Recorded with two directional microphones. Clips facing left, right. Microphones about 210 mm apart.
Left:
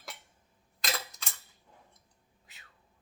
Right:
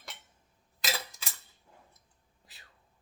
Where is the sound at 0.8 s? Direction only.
5° right (ahead or behind).